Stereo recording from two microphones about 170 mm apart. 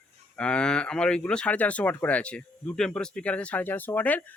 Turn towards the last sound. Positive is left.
turn(degrees=10)  # may be behind; listen again after turning